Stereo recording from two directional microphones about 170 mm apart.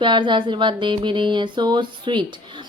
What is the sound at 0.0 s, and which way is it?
A woman's voice, 25° right (ahead or behind).